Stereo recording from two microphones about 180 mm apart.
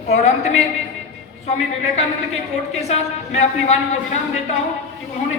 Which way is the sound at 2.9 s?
35° left (ahead or behind).